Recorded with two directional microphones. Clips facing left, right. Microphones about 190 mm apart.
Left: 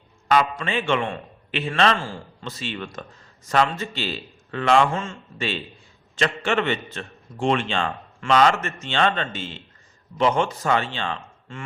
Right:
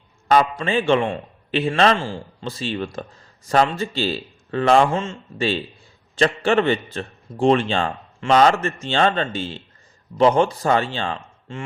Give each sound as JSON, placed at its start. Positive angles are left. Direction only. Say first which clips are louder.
{"t": 0.3, "sound": "a man's voice", "louder": "right 3 dB", "side_deg": -35}